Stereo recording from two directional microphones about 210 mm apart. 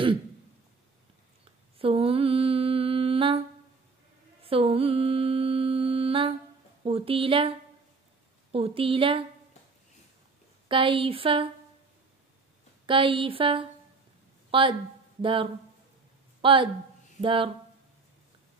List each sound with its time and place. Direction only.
1.8 s mantra: 25° right (ahead or behind)
4.4 s music: 25° right (ahead or behind)
6.8 s speech: 25° right (ahead or behind)
10.7 s speech: 25° right (ahead or behind)
12.8 s speech: 25° right (ahead or behind)
16.3 s a sound: 25° right (ahead or behind)
17.2 s speech: 25° right (ahead or behind)